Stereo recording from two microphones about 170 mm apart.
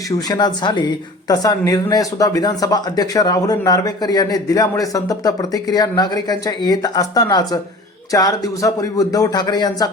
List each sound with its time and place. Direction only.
0.3 s speech: 25° left (ahead or behind)